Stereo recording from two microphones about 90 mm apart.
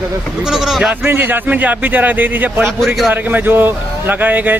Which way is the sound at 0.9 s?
20° right (ahead or behind).